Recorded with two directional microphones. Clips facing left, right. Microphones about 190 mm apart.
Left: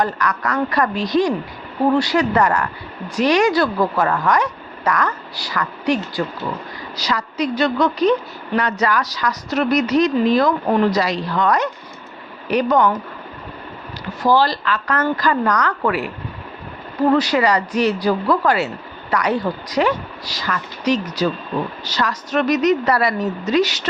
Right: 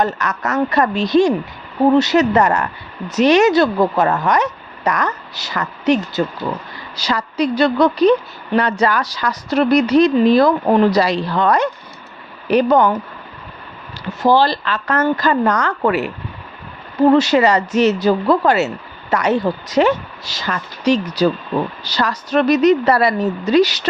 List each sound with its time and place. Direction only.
0.0 s a woman's voice: 25° right (ahead or behind)
14.1 s speech: 25° right (ahead or behind)
17.1 s a woman's voice: 25° right (ahead or behind)